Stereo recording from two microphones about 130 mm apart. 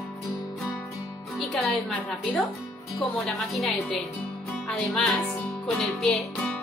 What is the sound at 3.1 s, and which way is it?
Music, centre (ahead or behind).